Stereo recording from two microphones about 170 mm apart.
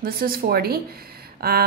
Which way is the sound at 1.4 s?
65° right (ahead or behind).